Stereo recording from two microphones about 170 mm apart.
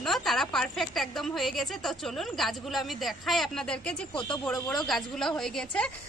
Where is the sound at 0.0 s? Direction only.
Centre (ahead or behind).